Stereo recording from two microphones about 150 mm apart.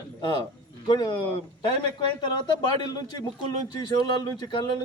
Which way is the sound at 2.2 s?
30° left (ahead or behind).